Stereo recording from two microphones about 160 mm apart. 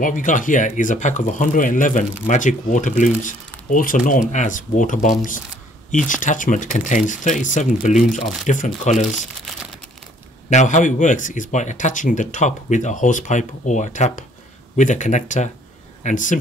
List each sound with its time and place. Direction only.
0.0 s speech: 55° left (ahead or behind)
10.5 s speech: 50° left (ahead or behind)